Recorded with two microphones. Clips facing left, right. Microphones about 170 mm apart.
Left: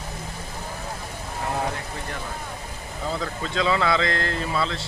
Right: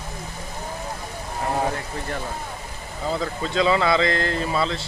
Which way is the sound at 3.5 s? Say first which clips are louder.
Right 3 dB; 20° right (ahead or behind).